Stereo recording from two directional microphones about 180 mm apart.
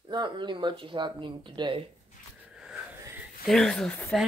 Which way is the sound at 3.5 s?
5° left (ahead or behind).